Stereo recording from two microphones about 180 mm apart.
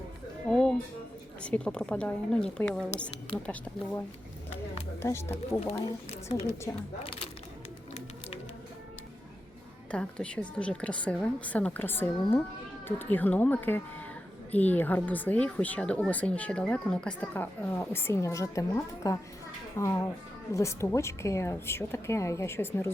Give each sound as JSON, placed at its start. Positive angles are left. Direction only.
{"t": 0.4, "sound": "music", "side_deg": 0}
{"t": 1.4, "sound": "a woman's voice", "side_deg": 5}
{"t": 5.0, "sound": "speech", "side_deg": 15}
{"t": 9.9, "sound": "speech", "side_deg": 5}